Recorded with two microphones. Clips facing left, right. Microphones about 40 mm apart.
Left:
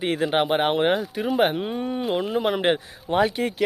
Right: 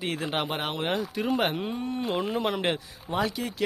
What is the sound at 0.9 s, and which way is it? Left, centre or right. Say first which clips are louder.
Speech: left 5 dB; centre.